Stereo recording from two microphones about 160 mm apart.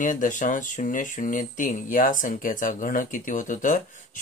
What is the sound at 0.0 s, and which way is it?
Speech, 55° left (ahead or behind).